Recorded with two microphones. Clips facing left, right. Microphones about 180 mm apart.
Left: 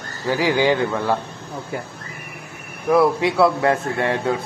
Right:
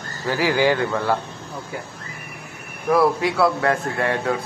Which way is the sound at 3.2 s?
25° left (ahead or behind).